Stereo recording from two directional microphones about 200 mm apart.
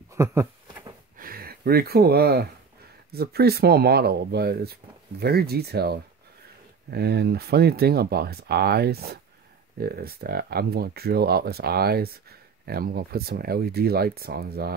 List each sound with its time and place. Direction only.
0.1 s a sound: 15° right (ahead or behind)
1.1 s gasp: 45° right (ahead or behind)
3.1 s speech: 50° right (ahead or behind)